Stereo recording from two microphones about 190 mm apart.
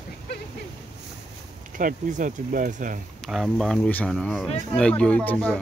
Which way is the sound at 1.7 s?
45° right (ahead or behind).